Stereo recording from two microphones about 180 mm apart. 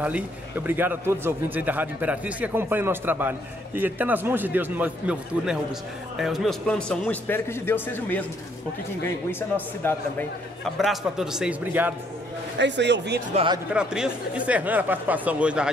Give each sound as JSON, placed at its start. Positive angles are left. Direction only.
{"t": 0.0, "sound": "a man's voice", "side_deg": -10}
{"t": 9.8, "sound": "a man's voice", "side_deg": 10}
{"t": 10.8, "sound": "speech", "side_deg": 0}
{"t": 12.5, "sound": "a man's voice", "side_deg": -75}
{"t": 13.3, "sound": "speech", "side_deg": -30}
{"t": 13.7, "sound": "a man's voice", "side_deg": -5}